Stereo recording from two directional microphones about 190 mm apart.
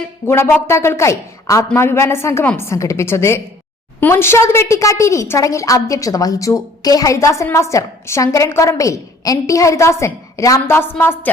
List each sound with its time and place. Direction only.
0.3 s a woman's voice: 15° left (ahead or behind)